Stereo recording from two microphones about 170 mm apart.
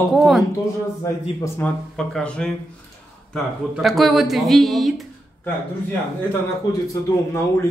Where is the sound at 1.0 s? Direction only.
20° left (ahead or behind).